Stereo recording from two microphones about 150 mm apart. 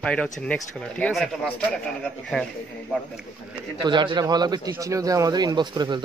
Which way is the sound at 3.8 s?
30° right (ahead or behind).